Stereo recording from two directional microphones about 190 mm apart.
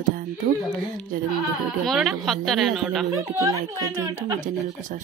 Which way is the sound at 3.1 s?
15° right (ahead or behind).